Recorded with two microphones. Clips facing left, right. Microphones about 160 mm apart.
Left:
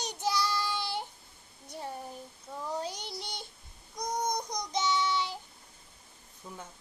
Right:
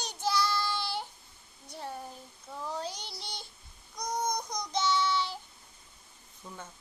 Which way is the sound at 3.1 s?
20° left (ahead or behind).